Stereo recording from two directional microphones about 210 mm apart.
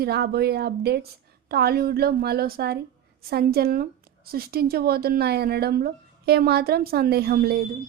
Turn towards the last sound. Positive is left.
turn(degrees=-45)  # may be behind; listen again after turning